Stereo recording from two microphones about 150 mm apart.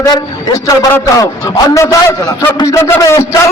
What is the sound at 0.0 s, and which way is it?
A man's voice, 25° left (ahead or behind).